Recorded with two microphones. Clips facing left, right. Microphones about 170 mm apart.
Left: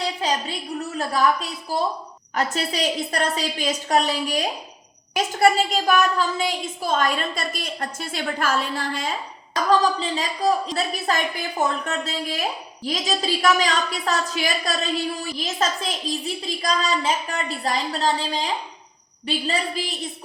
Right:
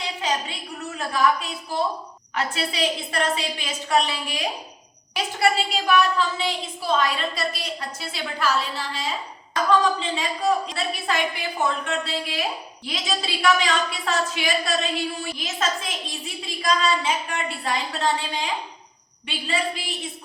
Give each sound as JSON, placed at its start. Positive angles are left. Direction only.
{"t": 0.9, "sound": "a woman's voice", "side_deg": 40}
{"t": 9.6, "sound": "a woman's voice", "side_deg": 35}